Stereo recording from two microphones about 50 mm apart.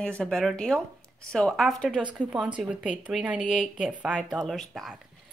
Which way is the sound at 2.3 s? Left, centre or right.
Centre.